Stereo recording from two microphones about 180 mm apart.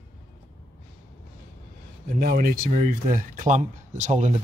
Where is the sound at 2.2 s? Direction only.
55° right (ahead or behind).